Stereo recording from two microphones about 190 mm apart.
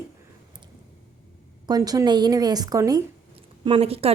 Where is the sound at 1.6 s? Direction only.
20° right (ahead or behind).